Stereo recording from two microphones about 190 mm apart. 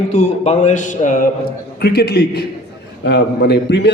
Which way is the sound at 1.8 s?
60° left (ahead or behind).